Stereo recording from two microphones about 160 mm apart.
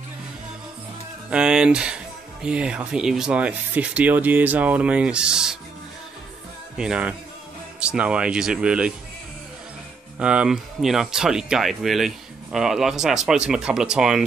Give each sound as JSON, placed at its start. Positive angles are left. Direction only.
{"t": 1.3, "sound": "speech", "side_deg": -5}
{"t": 6.8, "sound": "speech", "side_deg": -5}
{"t": 10.1, "sound": "speech", "side_deg": -5}